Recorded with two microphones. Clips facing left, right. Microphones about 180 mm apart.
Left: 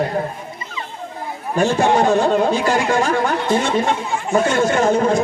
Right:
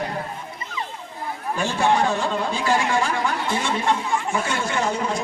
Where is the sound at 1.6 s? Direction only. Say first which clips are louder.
Left 6 dB; 45° left (ahead or behind).